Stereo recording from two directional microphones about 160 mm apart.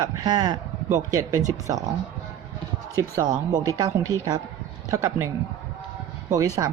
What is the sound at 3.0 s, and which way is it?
Speech, 20° right (ahead or behind).